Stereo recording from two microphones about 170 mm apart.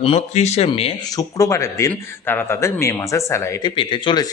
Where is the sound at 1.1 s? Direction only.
20° left (ahead or behind).